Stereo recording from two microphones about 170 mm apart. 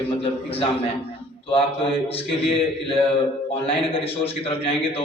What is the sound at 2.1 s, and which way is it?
A man's voice, 35° left (ahead or behind).